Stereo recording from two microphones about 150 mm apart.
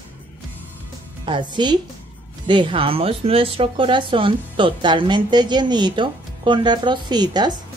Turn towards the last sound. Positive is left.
turn(degrees=-30)  # may be behind; listen again after turning